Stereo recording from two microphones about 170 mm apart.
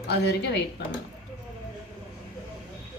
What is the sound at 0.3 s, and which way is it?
Speech, 85° left.